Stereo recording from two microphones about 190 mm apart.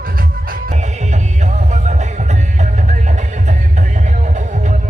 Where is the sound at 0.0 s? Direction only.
50° right (ahead or behind).